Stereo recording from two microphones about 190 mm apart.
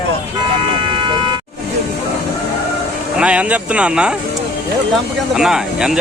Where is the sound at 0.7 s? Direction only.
25° right (ahead or behind).